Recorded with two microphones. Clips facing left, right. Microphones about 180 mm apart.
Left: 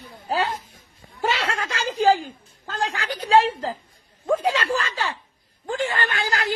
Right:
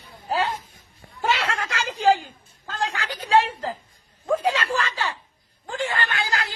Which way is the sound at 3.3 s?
35° left (ahead or behind).